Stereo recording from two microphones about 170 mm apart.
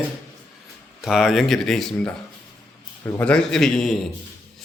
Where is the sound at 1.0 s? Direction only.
Centre (ahead or behind).